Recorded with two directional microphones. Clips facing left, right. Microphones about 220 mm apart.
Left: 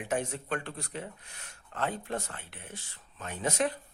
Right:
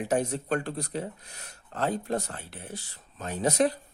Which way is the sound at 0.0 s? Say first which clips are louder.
Right 5 dB; 40° right (ahead or behind).